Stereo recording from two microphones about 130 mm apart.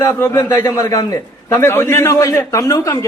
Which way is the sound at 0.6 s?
25° left (ahead or behind).